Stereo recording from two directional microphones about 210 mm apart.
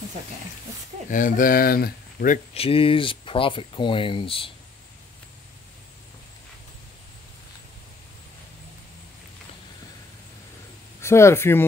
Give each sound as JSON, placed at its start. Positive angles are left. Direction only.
{"t": 1.1, "sound": "speech", "side_deg": 40}
{"t": 11.0, "sound": "speech", "side_deg": 10}